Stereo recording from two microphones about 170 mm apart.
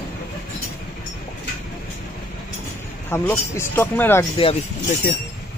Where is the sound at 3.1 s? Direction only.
15° left (ahead or behind).